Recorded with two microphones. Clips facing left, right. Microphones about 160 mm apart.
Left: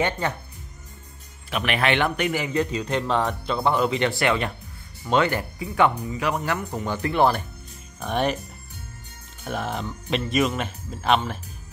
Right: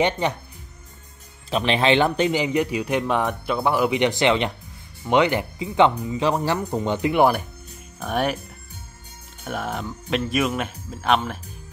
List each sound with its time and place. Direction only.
0.0 s a man's voice: 15° right (ahead or behind)
1.5 s a man's voice: 25° right (ahead or behind)
7.0 s a man's voice: 15° right (ahead or behind)
9.4 s speech: centre (ahead or behind)